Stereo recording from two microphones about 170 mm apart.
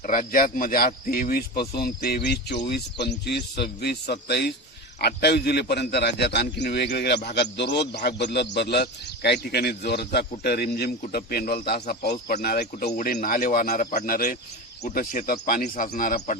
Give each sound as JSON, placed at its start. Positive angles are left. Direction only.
{"t": 0.0, "sound": "a man's voice", "side_deg": 50}
{"t": 13.1, "sound": "a man's voice", "side_deg": 55}